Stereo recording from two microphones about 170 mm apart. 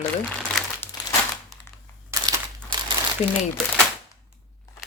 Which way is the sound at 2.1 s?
20° right (ahead or behind).